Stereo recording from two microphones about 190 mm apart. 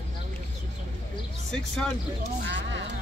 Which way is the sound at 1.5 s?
Centre (ahead or behind).